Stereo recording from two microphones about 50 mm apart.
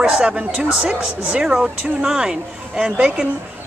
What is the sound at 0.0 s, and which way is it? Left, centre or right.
Speech, centre.